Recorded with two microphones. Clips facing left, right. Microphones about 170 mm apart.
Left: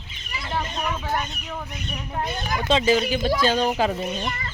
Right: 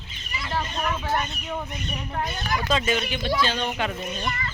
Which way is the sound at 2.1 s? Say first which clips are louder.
Left 1 dB; 15° left (ahead or behind).